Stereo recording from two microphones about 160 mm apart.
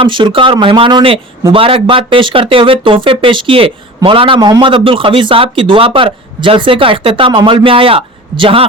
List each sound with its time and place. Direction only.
0.0 s a man's voice: 30° right (ahead or behind)